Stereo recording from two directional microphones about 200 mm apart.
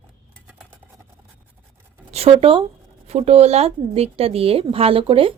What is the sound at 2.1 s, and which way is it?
A woman's voice, 30° right (ahead or behind).